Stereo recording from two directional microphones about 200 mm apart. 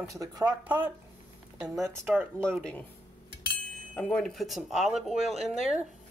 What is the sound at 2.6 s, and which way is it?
Speech, 5° left (ahead or behind).